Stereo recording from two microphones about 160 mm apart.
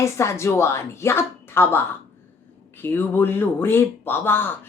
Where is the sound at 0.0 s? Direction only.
15° left (ahead or behind).